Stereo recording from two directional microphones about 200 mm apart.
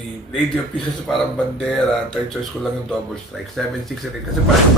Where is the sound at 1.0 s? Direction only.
Centre (ahead or behind).